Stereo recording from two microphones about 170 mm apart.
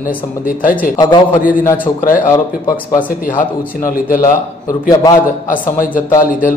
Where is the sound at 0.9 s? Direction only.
25° left (ahead or behind).